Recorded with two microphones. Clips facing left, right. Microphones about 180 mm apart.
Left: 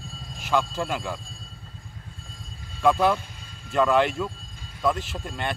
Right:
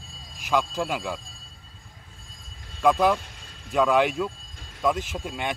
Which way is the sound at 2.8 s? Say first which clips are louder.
Even; 10° right (ahead or behind).